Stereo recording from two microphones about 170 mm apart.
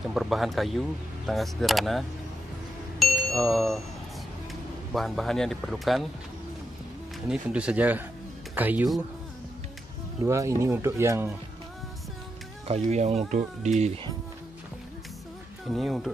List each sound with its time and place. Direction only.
0.1 s speech: centre (ahead or behind)
4.9 s speech: centre (ahead or behind)
7.2 s speech: 5° right (ahead or behind)
10.2 s speech: 15° right (ahead or behind)
12.8 s speech: 40° right (ahead or behind)
15.6 s speech: centre (ahead or behind)